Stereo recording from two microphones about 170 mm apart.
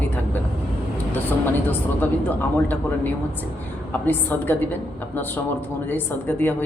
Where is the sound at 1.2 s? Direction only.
10° left (ahead or behind).